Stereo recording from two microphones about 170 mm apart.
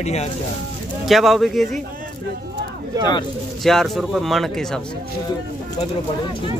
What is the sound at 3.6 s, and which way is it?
Speech, centre (ahead or behind).